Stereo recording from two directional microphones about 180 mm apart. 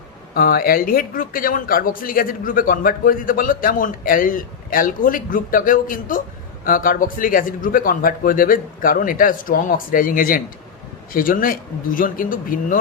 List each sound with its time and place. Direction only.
0.3 s speech: 55° left (ahead or behind)